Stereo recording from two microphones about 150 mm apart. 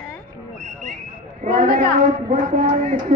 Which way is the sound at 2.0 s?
55° right (ahead or behind).